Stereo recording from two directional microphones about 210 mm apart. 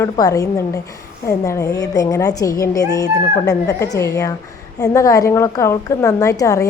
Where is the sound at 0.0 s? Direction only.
15° left (ahead or behind).